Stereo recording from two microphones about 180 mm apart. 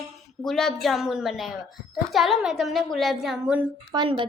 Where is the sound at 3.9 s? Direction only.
25° right (ahead or behind).